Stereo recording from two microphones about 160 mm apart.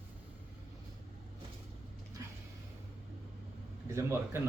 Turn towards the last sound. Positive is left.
turn(degrees=-15)  # may be behind; listen again after turning